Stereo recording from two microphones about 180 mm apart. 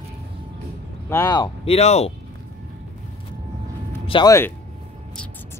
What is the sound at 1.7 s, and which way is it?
Speech, 35° left (ahead or behind).